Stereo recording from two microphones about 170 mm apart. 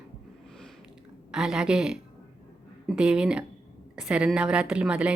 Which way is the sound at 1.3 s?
5° right (ahead or behind).